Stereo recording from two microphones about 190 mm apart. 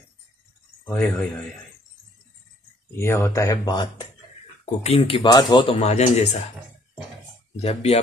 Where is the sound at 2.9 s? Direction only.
10° left (ahead or behind).